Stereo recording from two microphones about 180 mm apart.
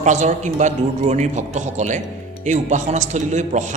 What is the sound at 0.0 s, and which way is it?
A man's voice, 40° right (ahead or behind).